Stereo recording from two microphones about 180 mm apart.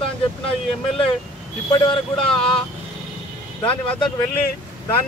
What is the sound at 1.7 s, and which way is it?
Speech, 25° left (ahead or behind).